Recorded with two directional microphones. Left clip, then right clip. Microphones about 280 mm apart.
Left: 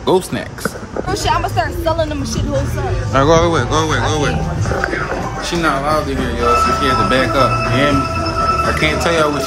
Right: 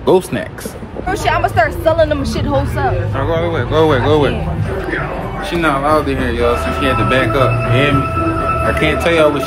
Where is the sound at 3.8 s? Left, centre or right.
Centre.